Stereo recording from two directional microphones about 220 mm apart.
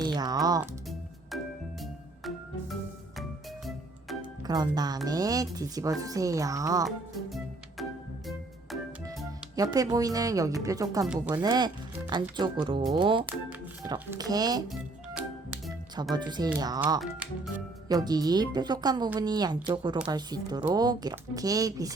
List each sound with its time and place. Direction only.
0.0 s music: 20° right (ahead or behind)
1.8 s music: centre (ahead or behind)
4.4 s speech: 20° right (ahead or behind)
6.8 s music: centre (ahead or behind)
9.7 s speech: 15° right (ahead or behind)
11.0 s speech: 5° right (ahead or behind)
11.4 s speech: 20° right (ahead or behind)
16.1 s speech: 20° right (ahead or behind)
17.0 s speech: centre (ahead or behind)
17.8 s speech: 20° right (ahead or behind)